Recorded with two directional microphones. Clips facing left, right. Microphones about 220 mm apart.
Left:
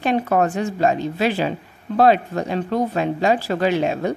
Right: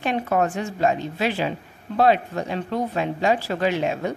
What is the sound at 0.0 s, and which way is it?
Speech, 45° left (ahead or behind).